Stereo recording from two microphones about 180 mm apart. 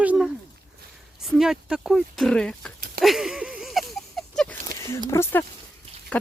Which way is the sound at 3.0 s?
Centre (ahead or behind).